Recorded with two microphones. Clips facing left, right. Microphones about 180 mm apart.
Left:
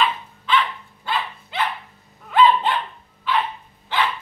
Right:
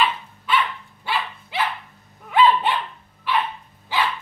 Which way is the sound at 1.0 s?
5° right (ahead or behind).